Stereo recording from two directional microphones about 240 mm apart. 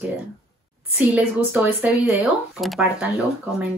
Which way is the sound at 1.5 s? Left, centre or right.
Centre.